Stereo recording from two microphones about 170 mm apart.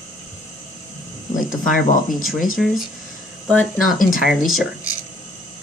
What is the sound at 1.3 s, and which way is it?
Speech, 50° left (ahead or behind).